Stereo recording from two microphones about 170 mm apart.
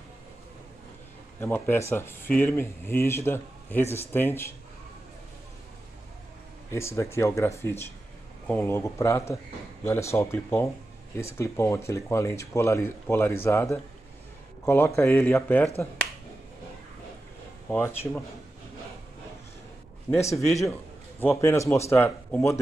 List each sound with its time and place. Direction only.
1.4 s speech: 15° left (ahead or behind)
6.7 s a man's voice: 15° left (ahead or behind)
17.6 s speech: 10° left (ahead or behind)
20.1 s speech: 15° left (ahead or behind)